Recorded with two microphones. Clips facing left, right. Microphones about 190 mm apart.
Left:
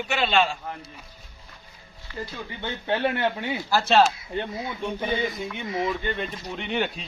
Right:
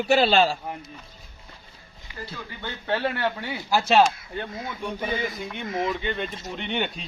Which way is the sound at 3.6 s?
10° right (ahead or behind).